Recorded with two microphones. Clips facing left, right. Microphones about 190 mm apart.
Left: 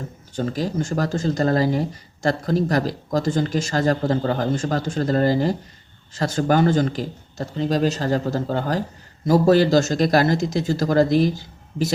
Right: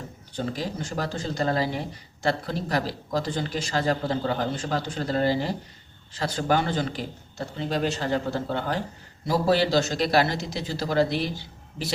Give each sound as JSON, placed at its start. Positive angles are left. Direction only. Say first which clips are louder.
{"t": 0.3, "sound": "speech", "louder": "left 6 dB", "side_deg": 45}